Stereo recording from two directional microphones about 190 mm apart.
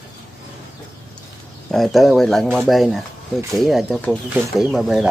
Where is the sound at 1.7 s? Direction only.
Centre (ahead or behind).